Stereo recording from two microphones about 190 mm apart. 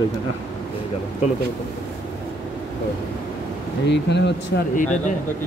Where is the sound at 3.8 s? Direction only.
65° left (ahead or behind).